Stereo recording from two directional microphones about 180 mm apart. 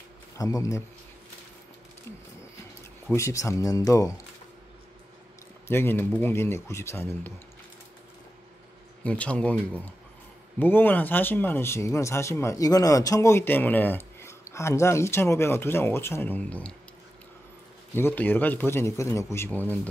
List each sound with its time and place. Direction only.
0.4 s speech: 20° left (ahead or behind)
3.1 s speech: 15° left (ahead or behind)
5.7 s speech: 15° left (ahead or behind)
9.0 s speech: 5° left (ahead or behind)
17.9 s speech: 10° left (ahead or behind)